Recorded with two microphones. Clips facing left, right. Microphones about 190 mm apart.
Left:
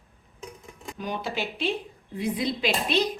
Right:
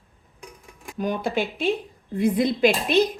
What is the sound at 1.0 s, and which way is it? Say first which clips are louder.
A woman's voice: right 6 dB; 50° right (ahead or behind).